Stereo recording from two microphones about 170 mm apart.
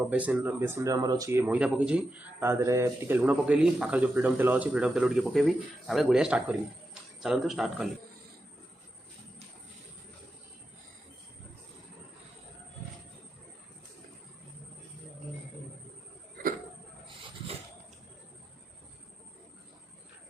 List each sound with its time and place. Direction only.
0.1 s speech: 10° right (ahead or behind)